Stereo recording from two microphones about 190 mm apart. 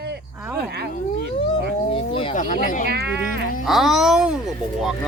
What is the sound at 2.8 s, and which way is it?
Speech, 60° right (ahead or behind).